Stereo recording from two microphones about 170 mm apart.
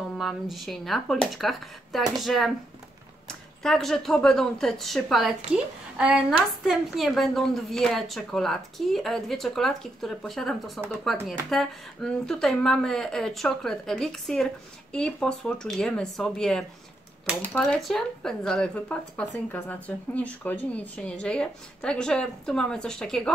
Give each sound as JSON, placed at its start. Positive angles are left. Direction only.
{"t": 0.1, "sound": "speech", "side_deg": 0}